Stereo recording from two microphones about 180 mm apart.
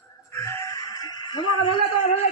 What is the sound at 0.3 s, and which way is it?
Music, 15° left (ahead or behind).